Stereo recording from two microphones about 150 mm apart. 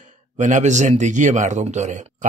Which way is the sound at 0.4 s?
55° right (ahead or behind).